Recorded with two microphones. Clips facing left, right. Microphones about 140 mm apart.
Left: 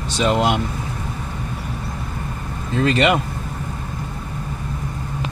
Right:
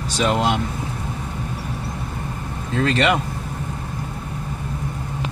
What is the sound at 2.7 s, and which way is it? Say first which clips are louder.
Speech: left 2 dB; 10° left (ahead or behind).